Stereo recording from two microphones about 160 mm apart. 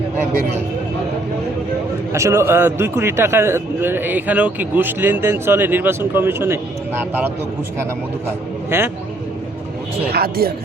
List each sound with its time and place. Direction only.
2.1 s a man's voice: 15° right (ahead or behind)
8.7 s a man's voice: 15° right (ahead or behind)
10.1 s speech: 75° right (ahead or behind)